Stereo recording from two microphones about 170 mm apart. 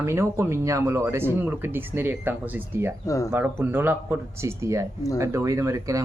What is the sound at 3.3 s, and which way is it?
Speech, 10° right (ahead or behind).